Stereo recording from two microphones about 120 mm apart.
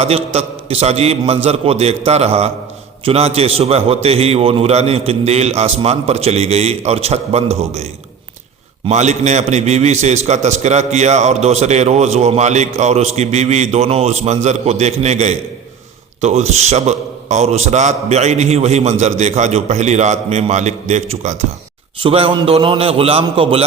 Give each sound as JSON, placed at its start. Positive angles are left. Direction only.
{"t": 0.3, "sound": "a man's voice", "side_deg": -60}
{"t": 8.9, "sound": "a man's voice", "side_deg": -70}
{"t": 22.0, "sound": "a man's voice", "side_deg": -50}